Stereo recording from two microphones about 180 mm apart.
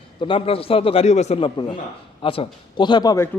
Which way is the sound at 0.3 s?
30° left (ahead or behind).